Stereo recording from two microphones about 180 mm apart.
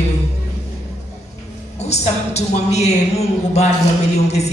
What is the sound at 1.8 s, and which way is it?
A woman's voice, 35° left (ahead or behind).